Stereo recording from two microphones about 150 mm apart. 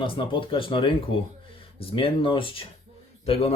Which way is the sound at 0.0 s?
35° left (ahead or behind).